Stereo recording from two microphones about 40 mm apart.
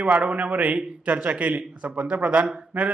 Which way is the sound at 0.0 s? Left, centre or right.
Right.